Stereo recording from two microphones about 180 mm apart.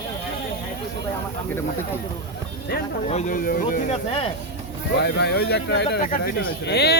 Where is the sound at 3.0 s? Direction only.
40° left (ahead or behind).